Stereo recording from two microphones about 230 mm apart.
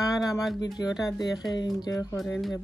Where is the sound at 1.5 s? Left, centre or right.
Centre.